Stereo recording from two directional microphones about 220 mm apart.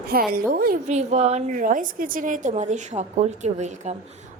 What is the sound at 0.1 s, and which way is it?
A woman's voice, 40° right (ahead or behind).